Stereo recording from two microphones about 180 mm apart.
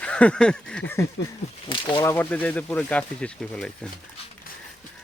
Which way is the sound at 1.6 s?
30° left (ahead or behind).